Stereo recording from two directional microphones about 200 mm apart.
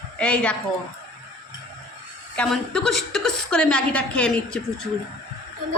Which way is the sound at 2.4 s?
5° left (ahead or behind).